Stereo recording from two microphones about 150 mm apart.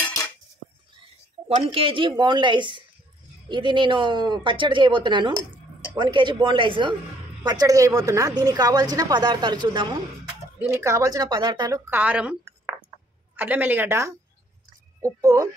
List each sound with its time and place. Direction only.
1.5 s a woman's voice: 35° right (ahead or behind)
10.7 s a woman's voice: 20° right (ahead or behind)
11.9 s a woman's voice: 10° right (ahead or behind)
13.4 s a woman's voice: 10° right (ahead or behind)